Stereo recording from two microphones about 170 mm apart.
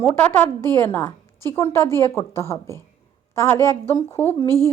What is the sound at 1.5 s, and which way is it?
A woman's voice, 15° left (ahead or behind).